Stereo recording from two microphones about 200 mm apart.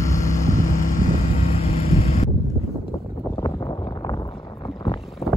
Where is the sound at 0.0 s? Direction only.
15° left (ahead or behind).